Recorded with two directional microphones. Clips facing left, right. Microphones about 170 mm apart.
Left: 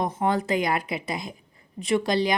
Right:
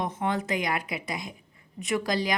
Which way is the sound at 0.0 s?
35° left (ahead or behind).